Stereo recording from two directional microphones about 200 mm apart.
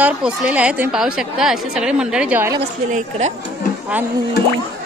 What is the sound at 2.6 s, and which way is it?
Speech, 35° right (ahead or behind).